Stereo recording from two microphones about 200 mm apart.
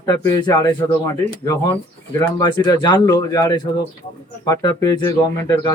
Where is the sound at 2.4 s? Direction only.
20° left (ahead or behind).